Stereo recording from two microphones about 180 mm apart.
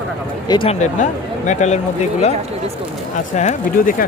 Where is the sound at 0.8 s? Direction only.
40° left (ahead or behind).